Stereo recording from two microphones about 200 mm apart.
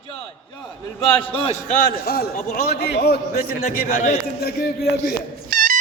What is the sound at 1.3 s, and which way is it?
Speech, 30° left (ahead or behind).